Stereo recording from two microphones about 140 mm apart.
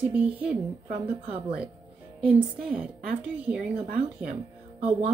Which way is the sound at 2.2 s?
10° right (ahead or behind).